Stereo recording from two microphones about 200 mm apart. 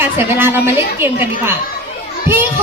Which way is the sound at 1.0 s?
10° right (ahead or behind).